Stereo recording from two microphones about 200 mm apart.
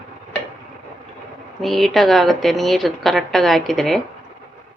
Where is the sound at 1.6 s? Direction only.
Centre (ahead or behind).